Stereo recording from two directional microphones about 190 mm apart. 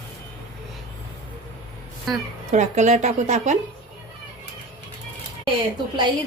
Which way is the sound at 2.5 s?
40° right (ahead or behind).